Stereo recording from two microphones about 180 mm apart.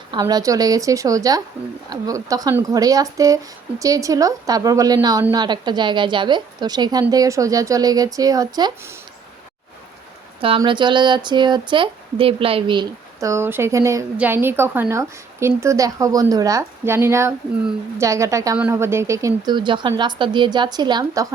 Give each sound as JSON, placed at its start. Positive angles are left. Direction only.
{"t": 0.1, "sound": "speech", "side_deg": -20}
{"t": 10.4, "sound": "speech", "side_deg": -30}